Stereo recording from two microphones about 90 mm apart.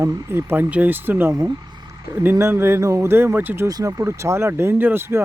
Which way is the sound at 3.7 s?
40° right (ahead or behind).